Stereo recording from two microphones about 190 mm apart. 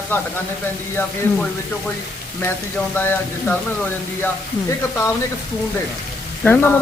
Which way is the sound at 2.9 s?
10° left (ahead or behind).